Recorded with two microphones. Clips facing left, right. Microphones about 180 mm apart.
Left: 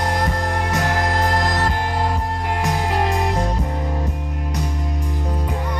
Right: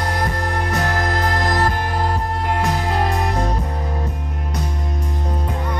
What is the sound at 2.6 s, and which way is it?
Music, 15° left (ahead or behind).